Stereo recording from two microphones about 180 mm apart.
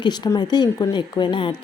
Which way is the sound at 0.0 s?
25° left (ahead or behind).